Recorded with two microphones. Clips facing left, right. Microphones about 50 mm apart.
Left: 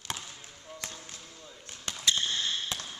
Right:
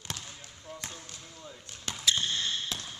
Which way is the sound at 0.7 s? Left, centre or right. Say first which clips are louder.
Right 1 dB; centre.